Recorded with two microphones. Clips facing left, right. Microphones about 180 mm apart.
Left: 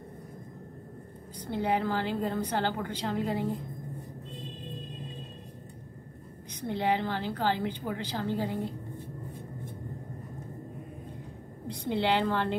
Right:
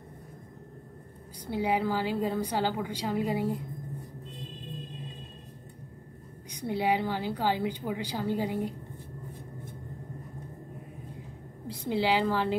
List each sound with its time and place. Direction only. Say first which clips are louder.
1.4 s a woman's voice: right 1 dB; 10° right (ahead or behind)
6.6 s a woman's voice: right 1 dB; 10° right (ahead or behind)
11.6 s a woman's voice: right 1 dB; 5° right (ahead or behind)